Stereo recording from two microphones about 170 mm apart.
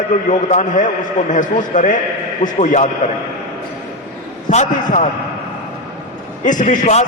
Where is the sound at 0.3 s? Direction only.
45° left (ahead or behind).